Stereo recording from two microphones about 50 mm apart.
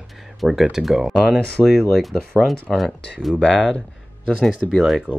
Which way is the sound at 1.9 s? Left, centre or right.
Centre.